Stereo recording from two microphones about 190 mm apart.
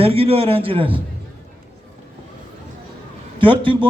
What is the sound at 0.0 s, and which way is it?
A man's voice, 30° right (ahead or behind).